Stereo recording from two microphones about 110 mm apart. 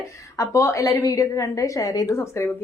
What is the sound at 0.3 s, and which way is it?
Speech, 25° left (ahead or behind).